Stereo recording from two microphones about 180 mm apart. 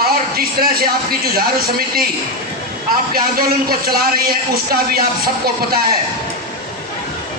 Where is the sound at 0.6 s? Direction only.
55° right (ahead or behind).